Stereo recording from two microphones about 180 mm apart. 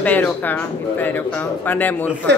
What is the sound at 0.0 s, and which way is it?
Speech, 10° left (ahead or behind).